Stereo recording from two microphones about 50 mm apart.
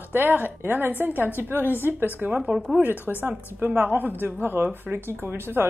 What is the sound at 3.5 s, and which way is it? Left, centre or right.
A woman's voice, right.